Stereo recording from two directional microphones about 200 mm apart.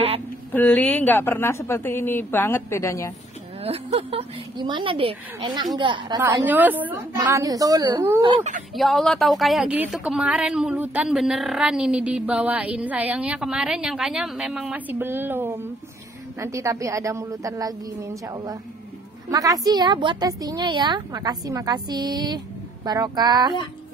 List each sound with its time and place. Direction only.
0.5 s speech: 10° left (ahead or behind)
3.6 s a woman's voice: 30° right (ahead or behind)
6.4 s a woman's voice: 10° right (ahead or behind)
8.7 s a woman's voice: centre (ahead or behind); by 23.5 s 20° right (ahead or behind)